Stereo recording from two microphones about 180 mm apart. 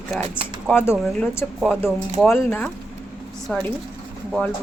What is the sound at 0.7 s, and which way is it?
Speech, 10° left (ahead or behind).